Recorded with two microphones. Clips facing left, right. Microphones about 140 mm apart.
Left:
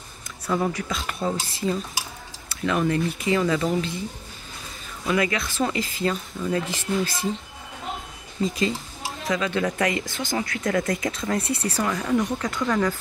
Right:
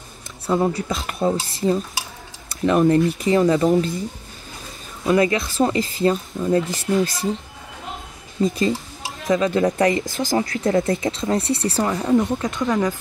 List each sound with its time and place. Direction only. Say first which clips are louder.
0.5 s speech: right 5 dB; 25° right (ahead or behind)
5.0 s speech: right 6 dB; 35° right (ahead or behind)
9.3 s speech: right 7 dB; 35° right (ahead or behind)